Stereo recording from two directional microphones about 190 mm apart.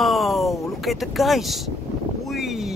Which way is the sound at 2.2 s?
Centre (ahead or behind).